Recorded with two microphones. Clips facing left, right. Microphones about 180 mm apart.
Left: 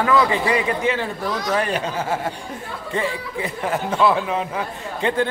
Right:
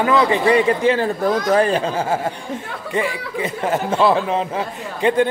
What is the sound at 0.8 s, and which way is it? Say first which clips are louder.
Speech: right 6 dB; 40° right (ahead or behind).